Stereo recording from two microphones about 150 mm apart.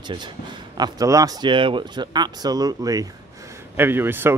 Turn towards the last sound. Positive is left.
turn(degrees=-15)  # may be behind; listen again after turning